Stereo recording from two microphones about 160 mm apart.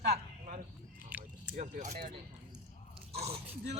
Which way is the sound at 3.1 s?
40° right (ahead or behind).